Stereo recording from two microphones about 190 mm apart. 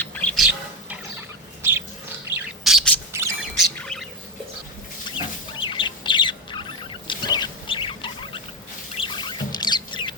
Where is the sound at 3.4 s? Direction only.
Centre (ahead or behind).